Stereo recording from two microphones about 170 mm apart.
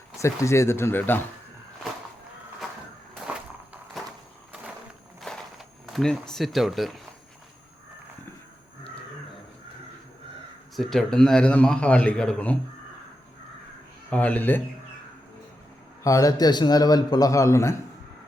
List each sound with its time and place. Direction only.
0.2 s speech: 15° left (ahead or behind)
5.3 s a sound: 5° left (ahead or behind)
5.8 s a man's voice: centre (ahead or behind)
10.8 s a man's voice: centre (ahead or behind)
14.1 s speech: 10° left (ahead or behind)
16.0 s a man's voice: 20° left (ahead or behind)